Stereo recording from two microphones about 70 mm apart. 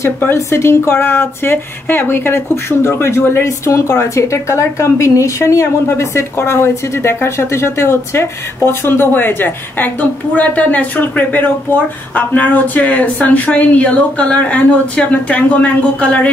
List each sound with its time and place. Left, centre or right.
0.3 s a woman's voice: left
3.4 s a woman's voice: left; by 16.3 s centre